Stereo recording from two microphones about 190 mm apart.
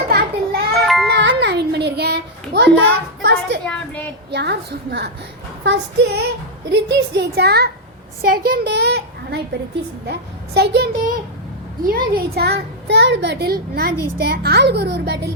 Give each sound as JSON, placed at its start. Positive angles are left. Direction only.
{"t": 0.1, "sound": "music", "side_deg": -55}
{"t": 0.7, "sound": "music", "side_deg": 0}
{"t": 1.1, "sound": "a sound", "side_deg": -65}
{"t": 3.2, "sound": "a child's voice", "side_deg": -60}
{"t": 3.6, "sound": "a woman's voice", "side_deg": 5}
{"t": 4.3, "sound": "a child's voice", "side_deg": -60}